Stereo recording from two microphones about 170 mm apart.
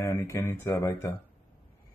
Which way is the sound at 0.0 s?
15° left (ahead or behind).